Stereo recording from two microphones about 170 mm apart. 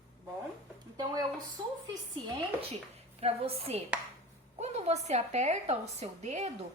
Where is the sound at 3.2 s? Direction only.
35° right (ahead or behind).